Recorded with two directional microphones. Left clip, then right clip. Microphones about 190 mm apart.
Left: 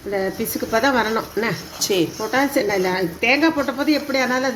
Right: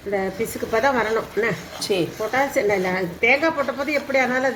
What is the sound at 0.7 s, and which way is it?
Speech, 50° left (ahead or behind).